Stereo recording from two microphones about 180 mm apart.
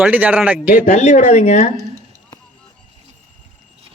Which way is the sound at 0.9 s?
40° left (ahead or behind).